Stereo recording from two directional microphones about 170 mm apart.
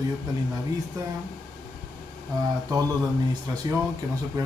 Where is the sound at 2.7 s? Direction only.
20° right (ahead or behind).